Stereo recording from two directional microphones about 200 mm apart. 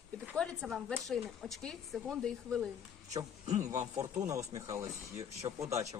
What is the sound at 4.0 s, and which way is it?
Speech, 15° right (ahead or behind).